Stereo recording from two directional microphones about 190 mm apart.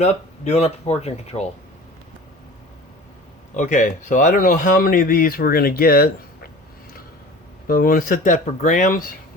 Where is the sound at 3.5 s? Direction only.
40° left (ahead or behind).